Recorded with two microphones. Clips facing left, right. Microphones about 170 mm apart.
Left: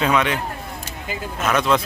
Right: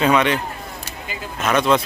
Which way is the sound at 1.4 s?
Centre (ahead or behind).